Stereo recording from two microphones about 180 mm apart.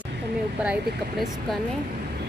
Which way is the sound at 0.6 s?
5° right (ahead or behind).